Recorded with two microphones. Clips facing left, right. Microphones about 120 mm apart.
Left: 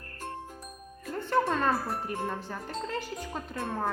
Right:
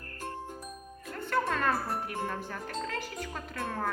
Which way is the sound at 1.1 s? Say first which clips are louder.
Left 3 dB; 25° left (ahead or behind).